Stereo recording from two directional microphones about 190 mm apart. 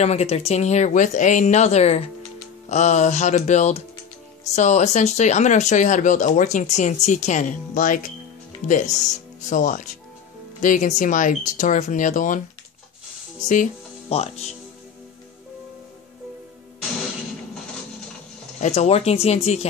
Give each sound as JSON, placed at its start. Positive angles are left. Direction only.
{"t": 0.0, "sound": "speech", "side_deg": 35}
{"t": 13.5, "sound": "speech", "side_deg": 35}
{"t": 18.6, "sound": "speech", "side_deg": 35}